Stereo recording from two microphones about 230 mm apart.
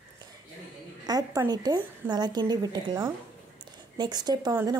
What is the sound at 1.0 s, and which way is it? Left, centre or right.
Speech, centre.